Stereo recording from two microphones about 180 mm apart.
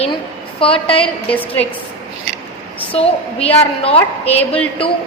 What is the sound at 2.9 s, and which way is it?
A woman's voice, 35° left (ahead or behind).